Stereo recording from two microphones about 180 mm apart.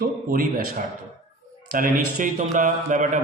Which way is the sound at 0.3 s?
50° right (ahead or behind).